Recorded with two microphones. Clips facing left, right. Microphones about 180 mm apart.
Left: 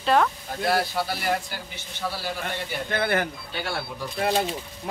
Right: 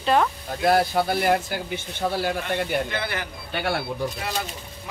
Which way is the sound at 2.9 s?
50° left (ahead or behind).